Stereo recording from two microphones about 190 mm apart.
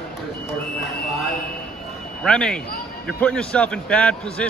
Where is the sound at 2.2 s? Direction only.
5° left (ahead or behind).